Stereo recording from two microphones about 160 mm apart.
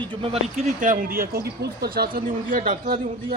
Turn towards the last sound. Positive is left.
turn(degrees=-60)  # may be behind; listen again after turning